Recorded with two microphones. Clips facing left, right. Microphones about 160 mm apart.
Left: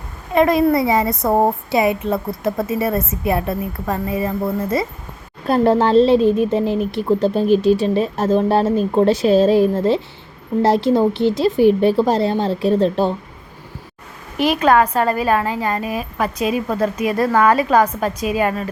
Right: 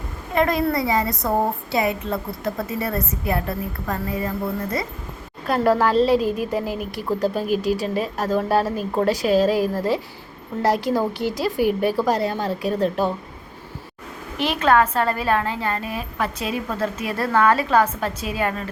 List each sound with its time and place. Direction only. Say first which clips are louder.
0.3 s a woman's voice: left 6 dB; 20° left (ahead or behind)
5.5 s a woman's voice: left 4 dB; 25° left (ahead or behind)
14.3 s a woman's voice: left 4 dB; 10° left (ahead or behind)